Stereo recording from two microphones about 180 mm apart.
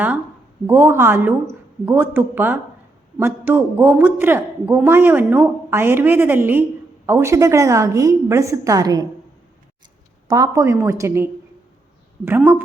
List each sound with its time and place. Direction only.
0.7 s a woman's voice: 15° right (ahead or behind)
10.2 s a woman's voice: 20° right (ahead or behind)